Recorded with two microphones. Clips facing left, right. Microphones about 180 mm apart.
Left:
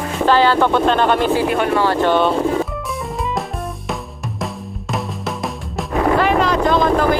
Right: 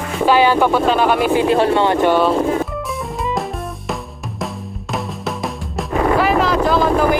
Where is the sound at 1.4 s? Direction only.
30° right (ahead or behind).